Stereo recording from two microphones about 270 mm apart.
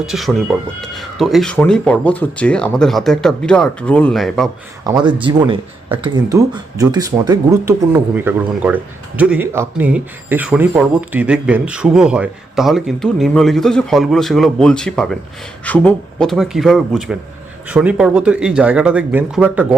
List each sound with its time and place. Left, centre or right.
0.0 s speech: centre
4.8 s speech: centre